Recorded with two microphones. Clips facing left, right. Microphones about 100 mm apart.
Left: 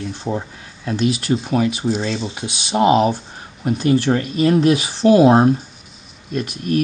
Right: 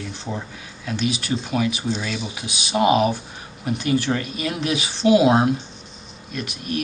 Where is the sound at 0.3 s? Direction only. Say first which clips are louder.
Left 7 dB; 35° left (ahead or behind).